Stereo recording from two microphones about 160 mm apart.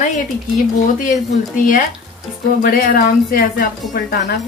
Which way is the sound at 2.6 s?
60° left (ahead or behind).